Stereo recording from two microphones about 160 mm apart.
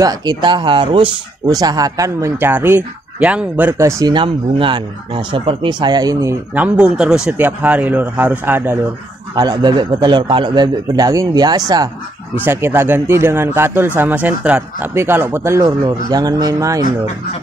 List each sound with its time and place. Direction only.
0.0 s a man's voice: 25° right (ahead or behind)
4.1 s speech: 30° right (ahead or behind)
6.5 s speech: 10° right (ahead or behind)
9.3 s a man's voice: 25° right (ahead or behind)
12.4 s speech: 15° right (ahead or behind)